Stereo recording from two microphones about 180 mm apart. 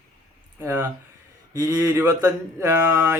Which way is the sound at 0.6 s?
15° right (ahead or behind).